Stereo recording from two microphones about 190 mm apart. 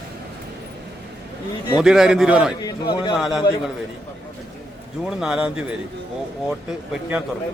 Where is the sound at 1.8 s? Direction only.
Centre (ahead or behind).